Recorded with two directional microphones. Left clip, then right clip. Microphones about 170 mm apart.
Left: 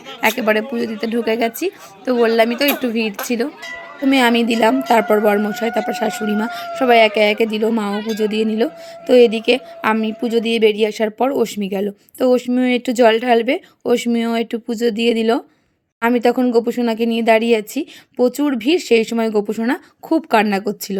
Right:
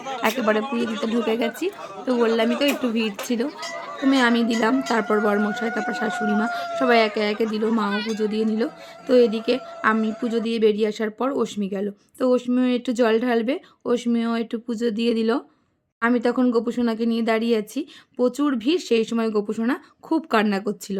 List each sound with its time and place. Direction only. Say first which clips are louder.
0.2 s a woman's voice: left 6 dB; 20° left (ahead or behind)